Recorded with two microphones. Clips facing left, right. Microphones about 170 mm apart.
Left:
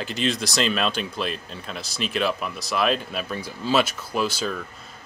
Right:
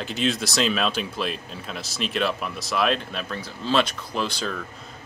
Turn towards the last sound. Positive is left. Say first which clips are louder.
# left 2 dB
turn(degrees=5)  # may be behind; listen again after turning